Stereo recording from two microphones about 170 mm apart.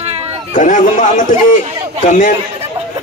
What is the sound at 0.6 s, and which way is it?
Speech, 50° left (ahead or behind).